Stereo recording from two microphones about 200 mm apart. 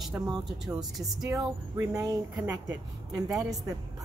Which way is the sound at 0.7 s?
Centre (ahead or behind).